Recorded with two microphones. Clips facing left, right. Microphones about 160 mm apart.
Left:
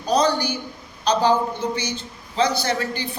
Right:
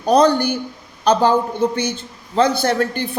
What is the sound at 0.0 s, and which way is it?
A woman's voice, 55° right (ahead or behind).